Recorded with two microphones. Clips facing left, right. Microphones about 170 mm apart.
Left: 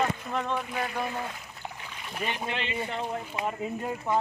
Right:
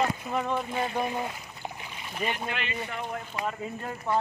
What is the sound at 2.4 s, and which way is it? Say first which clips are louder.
Speech: left 2 dB; 25° left (ahead or behind).